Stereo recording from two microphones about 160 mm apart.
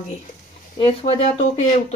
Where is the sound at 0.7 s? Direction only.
35° left (ahead or behind).